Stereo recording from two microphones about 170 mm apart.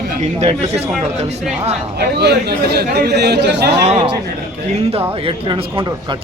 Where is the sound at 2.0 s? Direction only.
75° right (ahead or behind).